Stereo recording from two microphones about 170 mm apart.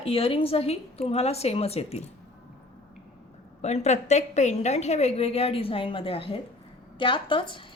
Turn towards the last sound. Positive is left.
turn(degrees=30)  # may be behind; listen again after turning